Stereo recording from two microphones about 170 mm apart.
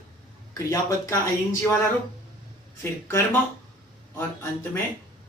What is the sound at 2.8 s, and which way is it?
Speech, 15° left (ahead or behind).